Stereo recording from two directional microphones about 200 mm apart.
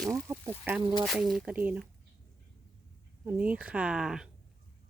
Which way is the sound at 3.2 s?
5° right (ahead or behind).